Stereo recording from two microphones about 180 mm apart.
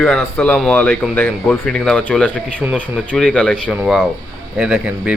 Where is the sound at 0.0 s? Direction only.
5° left (ahead or behind).